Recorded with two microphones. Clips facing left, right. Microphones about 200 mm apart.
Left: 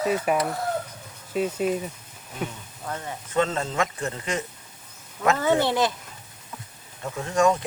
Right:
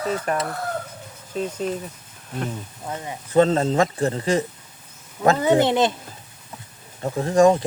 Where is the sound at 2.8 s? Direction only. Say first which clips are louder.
Right 1 dB; 15° right (ahead or behind).